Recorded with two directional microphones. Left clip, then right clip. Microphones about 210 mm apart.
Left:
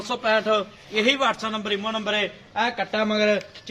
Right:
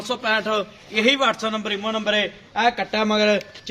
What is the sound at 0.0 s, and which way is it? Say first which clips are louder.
A man's voice: even; 45° right (ahead or behind).